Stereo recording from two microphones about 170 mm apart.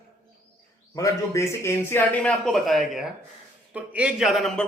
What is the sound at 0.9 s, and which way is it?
A man's voice, 20° left (ahead or behind).